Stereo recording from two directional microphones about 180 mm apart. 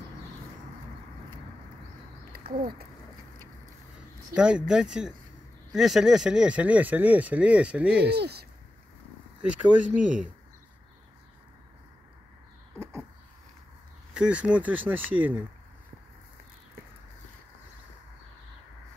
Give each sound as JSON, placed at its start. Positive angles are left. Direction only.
{"t": 2.3, "sound": "a sound", "side_deg": -55}
{"t": 4.4, "sound": "speech", "side_deg": -5}
{"t": 8.1, "sound": "speech", "side_deg": -65}
{"t": 9.4, "sound": "speech", "side_deg": -5}
{"t": 12.7, "sound": "a sound", "side_deg": -15}
{"t": 14.1, "sound": "speech", "side_deg": -5}